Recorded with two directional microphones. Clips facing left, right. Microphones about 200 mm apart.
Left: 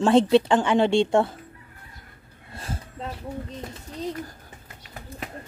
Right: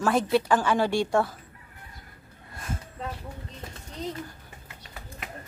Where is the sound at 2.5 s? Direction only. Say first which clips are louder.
Left 1 dB; 30° left (ahead or behind).